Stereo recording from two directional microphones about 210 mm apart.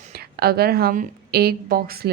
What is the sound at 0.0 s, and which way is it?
A woman's voice, 45° right (ahead or behind).